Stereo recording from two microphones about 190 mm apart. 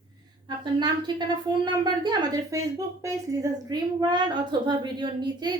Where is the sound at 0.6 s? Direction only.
25° right (ahead or behind).